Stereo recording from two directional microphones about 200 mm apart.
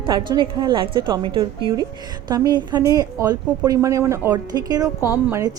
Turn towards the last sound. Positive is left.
turn(degrees=-15)  # may be behind; listen again after turning